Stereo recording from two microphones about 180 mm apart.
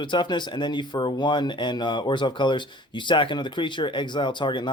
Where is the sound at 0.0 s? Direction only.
25° left (ahead or behind).